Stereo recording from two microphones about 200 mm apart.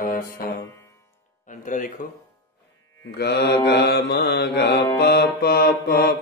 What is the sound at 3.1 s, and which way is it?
Mantra, 55° left (ahead or behind).